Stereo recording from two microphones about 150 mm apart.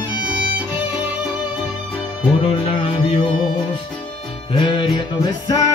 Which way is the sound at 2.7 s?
35° left (ahead or behind).